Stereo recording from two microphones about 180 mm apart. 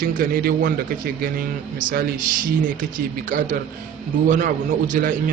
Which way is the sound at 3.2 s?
45° right (ahead or behind).